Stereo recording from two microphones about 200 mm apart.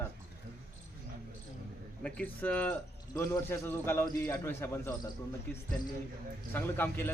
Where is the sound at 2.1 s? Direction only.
5° left (ahead or behind).